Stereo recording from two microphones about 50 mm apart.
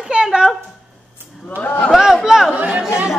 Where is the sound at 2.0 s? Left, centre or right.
Centre.